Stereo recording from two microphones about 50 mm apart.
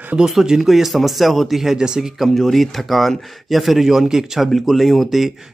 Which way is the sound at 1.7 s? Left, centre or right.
Centre.